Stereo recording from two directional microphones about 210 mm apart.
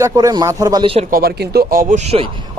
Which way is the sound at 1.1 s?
45° right (ahead or behind).